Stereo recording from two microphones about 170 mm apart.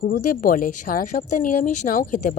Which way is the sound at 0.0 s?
55° left (ahead or behind).